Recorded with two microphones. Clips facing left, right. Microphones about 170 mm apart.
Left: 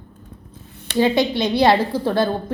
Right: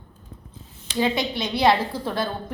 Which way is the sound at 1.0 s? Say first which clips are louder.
Left 6 dB; 35° left (ahead or behind).